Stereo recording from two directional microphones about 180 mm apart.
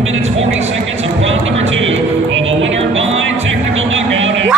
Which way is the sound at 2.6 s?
90° right.